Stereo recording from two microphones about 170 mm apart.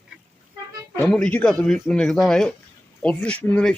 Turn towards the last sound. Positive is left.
turn(degrees=10)  # may be behind; listen again after turning